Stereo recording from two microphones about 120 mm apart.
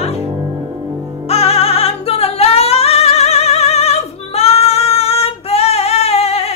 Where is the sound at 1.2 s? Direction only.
55° left (ahead or behind).